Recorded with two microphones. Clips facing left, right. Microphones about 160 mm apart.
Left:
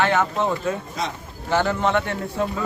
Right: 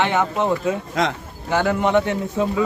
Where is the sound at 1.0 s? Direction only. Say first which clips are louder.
Right 7 dB; 90° right.